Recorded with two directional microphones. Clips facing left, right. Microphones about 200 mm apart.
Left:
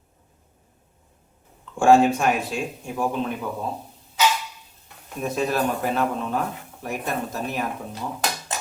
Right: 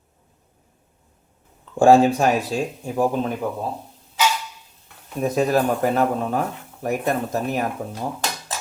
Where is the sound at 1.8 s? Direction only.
35° right (ahead or behind).